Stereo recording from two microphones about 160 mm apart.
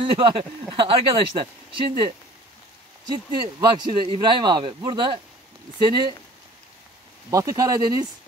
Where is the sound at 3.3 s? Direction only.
30° right (ahead or behind).